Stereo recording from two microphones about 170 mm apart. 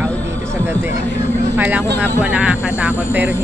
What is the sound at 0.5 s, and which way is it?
Chatter, 15° right (ahead or behind).